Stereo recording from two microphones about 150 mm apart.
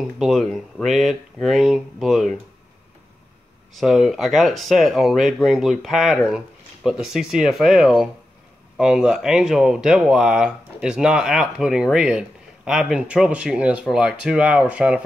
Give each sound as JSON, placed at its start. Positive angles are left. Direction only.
{"t": 0.2, "sound": "speech", "side_deg": 0}
{"t": 3.7, "sound": "speech", "side_deg": 0}